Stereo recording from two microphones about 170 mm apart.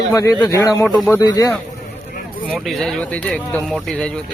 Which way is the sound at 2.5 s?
Centre (ahead or behind).